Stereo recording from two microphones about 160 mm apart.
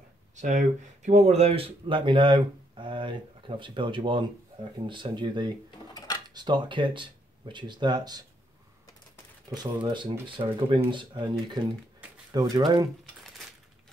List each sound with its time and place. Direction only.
0.4 s speech: 50° right (ahead or behind); by 8.2 s 25° right (ahead or behind)
9.5 s speech: 25° right (ahead or behind)